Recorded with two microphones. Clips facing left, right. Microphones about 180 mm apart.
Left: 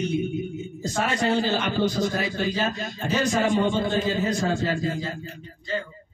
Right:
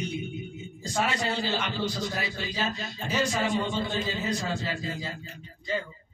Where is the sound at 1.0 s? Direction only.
50° left (ahead or behind).